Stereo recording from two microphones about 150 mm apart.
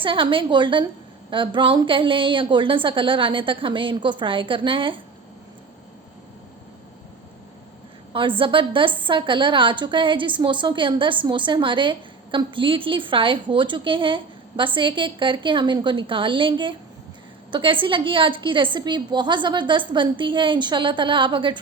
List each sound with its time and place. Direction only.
0.0 s a woman's voice: 35° right (ahead or behind)
8.1 s a woman's voice: 35° right (ahead or behind)